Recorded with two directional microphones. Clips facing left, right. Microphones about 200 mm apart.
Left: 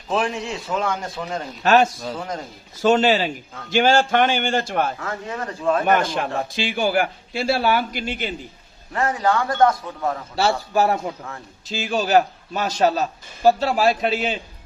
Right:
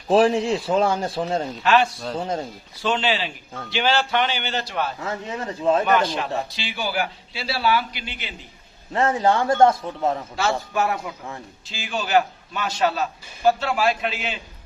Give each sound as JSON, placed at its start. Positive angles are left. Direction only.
{"t": 0.1, "sound": "a man's voice", "side_deg": -35}
{"t": 1.6, "sound": "a man's voice", "side_deg": 45}
{"t": 2.1, "sound": "a man's voice", "side_deg": -25}
{"t": 2.7, "sound": "a man's voice", "side_deg": 45}
{"t": 4.9, "sound": "a man's voice", "side_deg": -20}
{"t": 5.8, "sound": "a man's voice", "side_deg": 45}
{"t": 8.9, "sound": "a man's voice", "side_deg": -25}
{"t": 10.3, "sound": "a man's voice", "side_deg": 35}